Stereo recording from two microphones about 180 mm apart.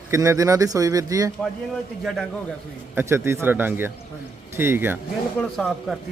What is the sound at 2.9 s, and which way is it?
Speech, 15° right (ahead or behind).